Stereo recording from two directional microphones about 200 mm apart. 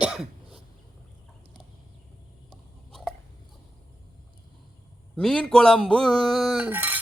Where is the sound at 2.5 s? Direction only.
Centre (ahead or behind).